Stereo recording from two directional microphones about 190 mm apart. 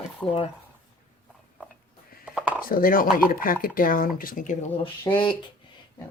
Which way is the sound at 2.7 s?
50° left (ahead or behind).